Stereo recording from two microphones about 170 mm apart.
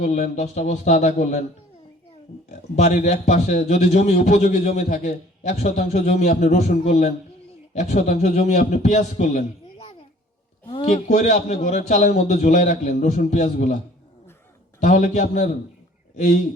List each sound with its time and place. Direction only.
0.0 s a man's voice: 45° left (ahead or behind)
2.5 s a man's voice: 45° left (ahead or behind)
14.8 s a man's voice: 45° left (ahead or behind)